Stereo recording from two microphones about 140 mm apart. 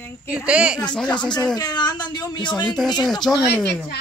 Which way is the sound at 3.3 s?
5° right (ahead or behind).